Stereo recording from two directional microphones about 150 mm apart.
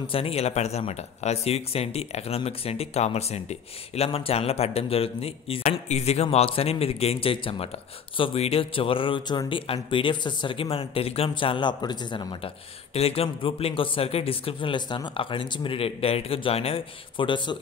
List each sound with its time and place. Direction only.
0.0 s speech: 40° left (ahead or behind)